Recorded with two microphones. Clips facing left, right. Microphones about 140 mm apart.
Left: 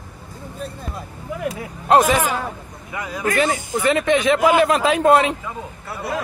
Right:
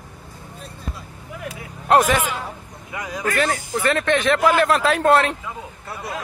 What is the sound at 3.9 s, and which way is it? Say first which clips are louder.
Speech: left 2 dB; 10° left (ahead or behind).